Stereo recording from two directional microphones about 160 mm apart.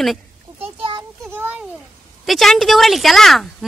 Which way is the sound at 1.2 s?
10° right (ahead or behind).